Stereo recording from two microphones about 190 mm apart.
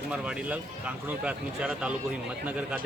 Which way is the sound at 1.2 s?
5° right (ahead or behind).